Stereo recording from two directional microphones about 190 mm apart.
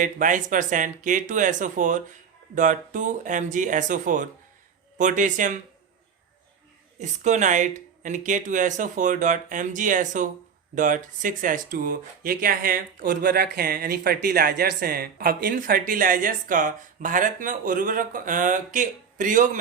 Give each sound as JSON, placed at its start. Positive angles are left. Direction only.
{"t": 0.0, "sound": "speech", "side_deg": -45}
{"t": 7.0, "sound": "speech", "side_deg": -40}